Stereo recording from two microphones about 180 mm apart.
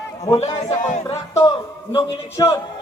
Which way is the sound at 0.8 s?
40° left (ahead or behind).